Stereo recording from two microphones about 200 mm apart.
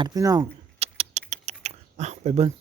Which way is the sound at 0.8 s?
30° right (ahead or behind).